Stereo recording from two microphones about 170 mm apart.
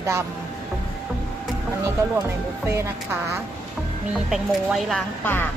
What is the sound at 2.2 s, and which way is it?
Speech, 15° right (ahead or behind).